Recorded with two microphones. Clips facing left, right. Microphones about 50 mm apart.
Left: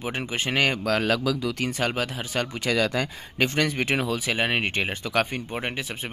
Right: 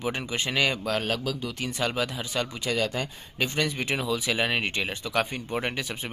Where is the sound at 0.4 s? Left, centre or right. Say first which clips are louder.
Left 3 dB; left.